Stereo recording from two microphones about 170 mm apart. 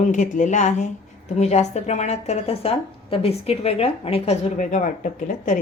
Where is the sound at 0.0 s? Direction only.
45° left (ahead or behind).